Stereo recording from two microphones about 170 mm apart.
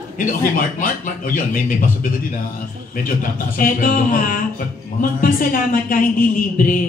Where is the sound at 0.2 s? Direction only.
55° left (ahead or behind).